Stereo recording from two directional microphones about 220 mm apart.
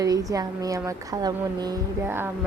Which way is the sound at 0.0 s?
15° right (ahead or behind).